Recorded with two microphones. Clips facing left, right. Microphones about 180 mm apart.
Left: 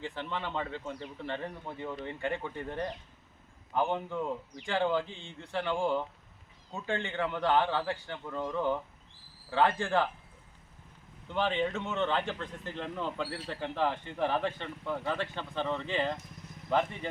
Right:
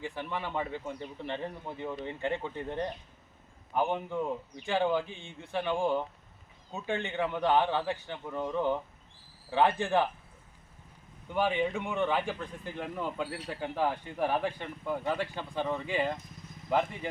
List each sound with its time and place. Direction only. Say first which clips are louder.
0.0 s speech: right 1 dB; 15° right (ahead or behind)
11.3 s speech: right 1 dB; 10° right (ahead or behind)